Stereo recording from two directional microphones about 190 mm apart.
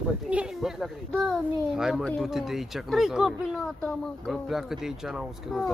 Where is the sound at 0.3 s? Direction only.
5° right (ahead or behind).